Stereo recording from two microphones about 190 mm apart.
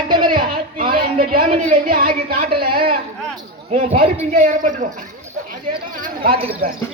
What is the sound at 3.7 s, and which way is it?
A man's voice, 35° right (ahead or behind).